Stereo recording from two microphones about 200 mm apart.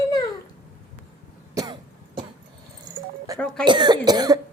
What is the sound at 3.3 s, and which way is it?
Cough, 15° right (ahead or behind).